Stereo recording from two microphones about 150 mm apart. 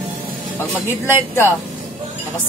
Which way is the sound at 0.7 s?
15° right (ahead or behind).